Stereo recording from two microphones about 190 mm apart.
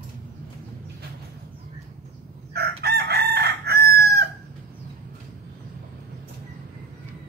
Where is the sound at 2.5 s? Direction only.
55° right (ahead or behind).